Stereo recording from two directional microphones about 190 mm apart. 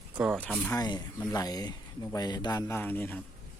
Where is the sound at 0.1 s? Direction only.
5° right (ahead or behind).